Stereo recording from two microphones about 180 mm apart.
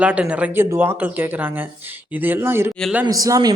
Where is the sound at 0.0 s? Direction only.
5° right (ahead or behind).